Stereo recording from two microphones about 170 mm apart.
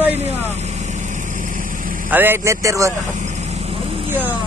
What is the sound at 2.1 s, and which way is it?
Speech, 15° right (ahead or behind).